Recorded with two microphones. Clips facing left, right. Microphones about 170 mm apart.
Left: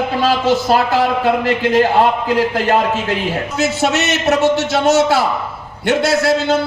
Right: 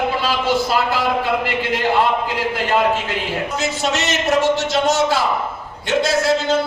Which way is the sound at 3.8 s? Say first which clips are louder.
Left 4 dB; 65° left (ahead or behind).